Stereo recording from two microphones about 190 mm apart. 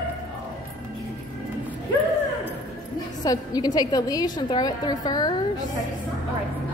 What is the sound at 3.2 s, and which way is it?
A woman's voice, 20° left (ahead or behind).